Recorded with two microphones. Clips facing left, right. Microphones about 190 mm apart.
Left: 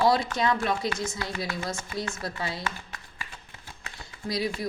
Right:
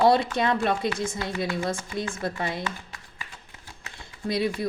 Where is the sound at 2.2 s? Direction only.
20° right (ahead or behind).